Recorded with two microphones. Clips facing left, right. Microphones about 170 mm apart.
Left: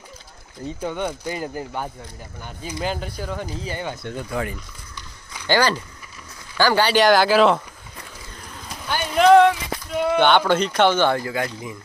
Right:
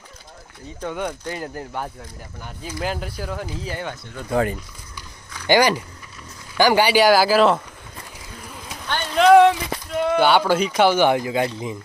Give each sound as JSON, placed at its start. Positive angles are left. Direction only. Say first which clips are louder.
{"t": 0.8, "sound": "speech", "louder": "even", "side_deg": 5}
{"t": 4.3, "sound": "speech", "louder": "right 7 dB", "side_deg": -35}
{"t": 5.5, "sound": "speech", "louder": "right 3 dB", "side_deg": -15}
{"t": 8.7, "sound": "clip-clop", "louder": "even", "side_deg": 10}
{"t": 9.3, "sound": "a sound", "louder": "right 1 dB", "side_deg": -20}
{"t": 9.9, "sound": "speech", "louder": "even", "side_deg": 0}